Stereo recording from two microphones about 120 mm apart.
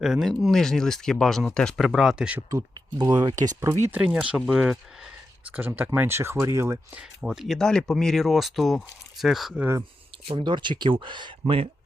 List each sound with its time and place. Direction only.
0.0 s speech: centre (ahead or behind)
2.5 s speech: 30° right (ahead or behind)
3.9 s speech: 10° right (ahead or behind)
7.2 s speech: centre (ahead or behind)
9.6 s speech: 20° right (ahead or behind)
10.2 s speech: 45° right (ahead or behind)